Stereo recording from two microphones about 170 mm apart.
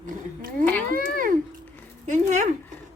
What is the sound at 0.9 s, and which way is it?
Speech, 55° right (ahead or behind).